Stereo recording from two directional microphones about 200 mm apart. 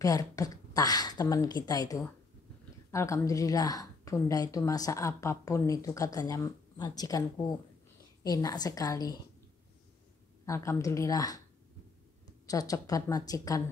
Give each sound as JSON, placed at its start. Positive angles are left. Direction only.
{"t": 0.0, "sound": "a woman's voice", "side_deg": 15}
{"t": 10.4, "sound": "a woman's voice", "side_deg": 15}
{"t": 12.4, "sound": "a woman's voice", "side_deg": 15}